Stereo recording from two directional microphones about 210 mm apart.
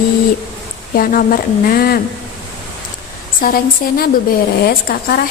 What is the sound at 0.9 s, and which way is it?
Speech, 40° left (ahead or behind).